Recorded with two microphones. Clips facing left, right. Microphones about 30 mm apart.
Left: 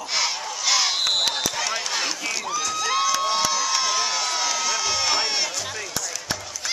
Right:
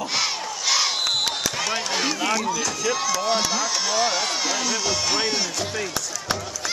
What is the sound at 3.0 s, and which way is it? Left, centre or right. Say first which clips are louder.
Speech: left 3 dB; centre.